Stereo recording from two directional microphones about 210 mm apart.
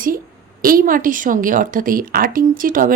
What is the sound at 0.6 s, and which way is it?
A woman's voice, 40° right (ahead or behind).